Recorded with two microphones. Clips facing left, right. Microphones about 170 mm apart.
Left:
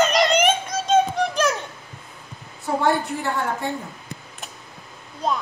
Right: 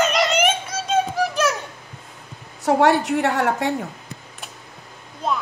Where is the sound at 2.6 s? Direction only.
75° right (ahead or behind).